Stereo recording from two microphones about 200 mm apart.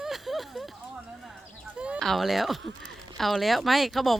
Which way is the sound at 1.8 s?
Centre (ahead or behind).